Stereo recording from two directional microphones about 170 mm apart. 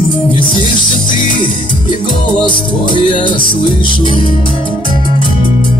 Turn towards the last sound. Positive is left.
turn(degrees=30)  # may be behind; listen again after turning